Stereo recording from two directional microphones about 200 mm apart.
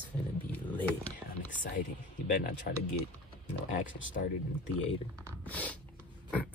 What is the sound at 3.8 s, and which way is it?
Speech, 70° left (ahead or behind).